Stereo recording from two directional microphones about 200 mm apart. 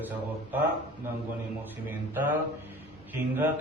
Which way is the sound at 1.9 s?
10° right (ahead or behind).